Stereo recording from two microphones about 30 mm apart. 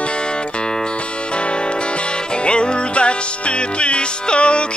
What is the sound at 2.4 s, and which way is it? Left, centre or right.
Music, left.